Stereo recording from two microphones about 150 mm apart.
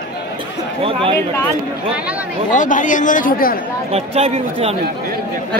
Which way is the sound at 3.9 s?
45° right (ahead or behind).